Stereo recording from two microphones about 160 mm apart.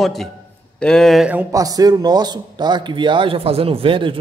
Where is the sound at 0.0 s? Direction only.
Centre (ahead or behind).